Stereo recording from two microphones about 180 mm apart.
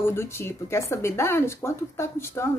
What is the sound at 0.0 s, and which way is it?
Speech, 15° left (ahead or behind).